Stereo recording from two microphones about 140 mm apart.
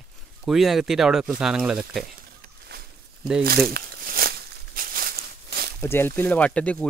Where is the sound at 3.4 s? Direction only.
90° right.